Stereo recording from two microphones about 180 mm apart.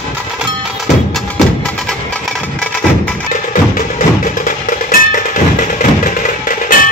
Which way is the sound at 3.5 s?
45° left (ahead or behind).